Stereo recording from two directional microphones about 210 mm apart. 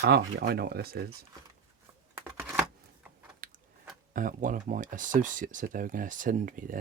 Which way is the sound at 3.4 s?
40° right (ahead or behind).